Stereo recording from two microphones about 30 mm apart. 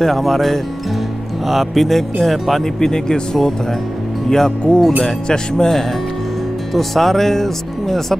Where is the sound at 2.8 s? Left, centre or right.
Left.